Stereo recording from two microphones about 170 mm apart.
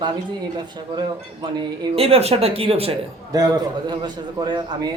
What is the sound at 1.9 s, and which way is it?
A man's voice, 35° right (ahead or behind).